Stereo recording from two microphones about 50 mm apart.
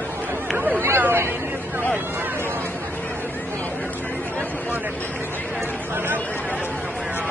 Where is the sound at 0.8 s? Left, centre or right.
Right.